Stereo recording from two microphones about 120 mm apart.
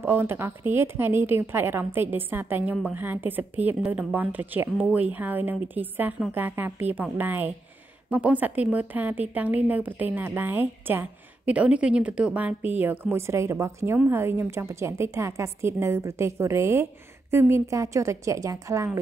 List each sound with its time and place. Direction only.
0.0 s a woman's voice: 20° right (ahead or behind)